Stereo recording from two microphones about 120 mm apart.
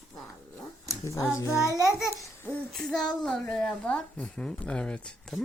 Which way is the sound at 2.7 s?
5° left (ahead or behind).